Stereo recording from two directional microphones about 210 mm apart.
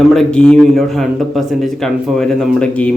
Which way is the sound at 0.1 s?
5° left (ahead or behind).